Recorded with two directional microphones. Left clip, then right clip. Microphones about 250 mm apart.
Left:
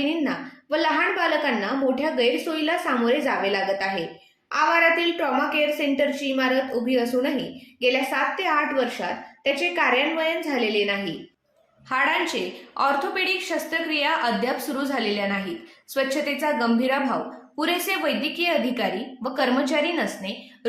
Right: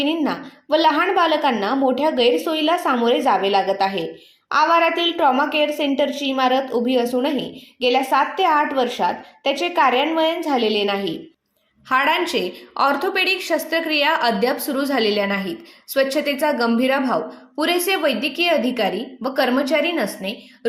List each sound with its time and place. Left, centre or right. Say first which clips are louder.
0.0 s a woman's voice: right 4 dB; right
11.9 s a woman's voice: right 4 dB; right